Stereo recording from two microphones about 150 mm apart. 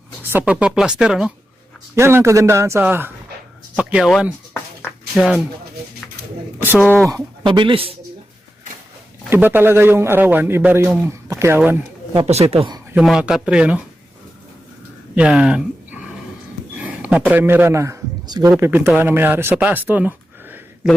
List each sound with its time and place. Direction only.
0.2 s a man's voice: 10° right (ahead or behind)
2.0 s a man's voice: 15° right (ahead or behind)
4.5 s a sound: 15° left (ahead or behind)
5.1 s speech: centre (ahead or behind)
6.6 s speech: 10° right (ahead or behind)
7.1 s speech: 30° right (ahead or behind)
9.3 s a man's voice: 15° right (ahead or behind)
12.2 s speech: 45° right (ahead or behind)
13.0 s speech: 5° right (ahead or behind)
15.1 s a man's voice: 5° right (ahead or behind)